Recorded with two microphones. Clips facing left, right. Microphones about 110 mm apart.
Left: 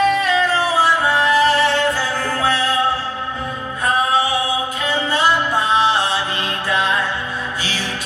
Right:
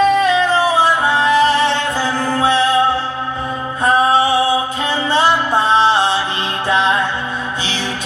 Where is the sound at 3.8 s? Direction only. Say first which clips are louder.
Right 4 dB; 30° right (ahead or behind).